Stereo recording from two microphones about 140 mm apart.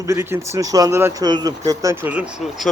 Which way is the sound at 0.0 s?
20° right (ahead or behind).